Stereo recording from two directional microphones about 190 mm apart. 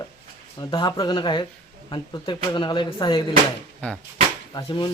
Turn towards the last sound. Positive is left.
turn(degrees=25)  # may be behind; listen again after turning